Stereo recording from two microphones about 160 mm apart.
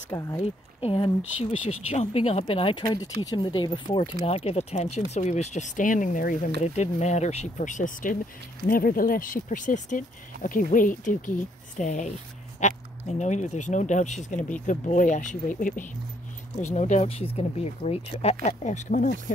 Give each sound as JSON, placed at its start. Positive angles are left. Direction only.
{"t": 0.4, "sound": "speech", "side_deg": 35}
{"t": 2.8, "sound": "speech", "side_deg": 25}
{"t": 6.6, "sound": "speech", "side_deg": 45}
{"t": 13.2, "sound": "speech", "side_deg": 50}